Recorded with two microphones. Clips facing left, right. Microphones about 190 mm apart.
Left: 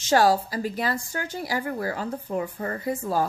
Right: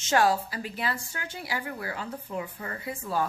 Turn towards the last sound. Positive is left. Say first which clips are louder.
# left 5 dB
turn(degrees=40)  # may be behind; listen again after turning